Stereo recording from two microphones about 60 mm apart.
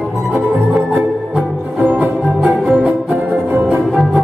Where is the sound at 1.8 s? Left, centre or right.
Right.